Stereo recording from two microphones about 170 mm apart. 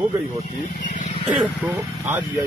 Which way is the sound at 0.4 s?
45° left (ahead or behind).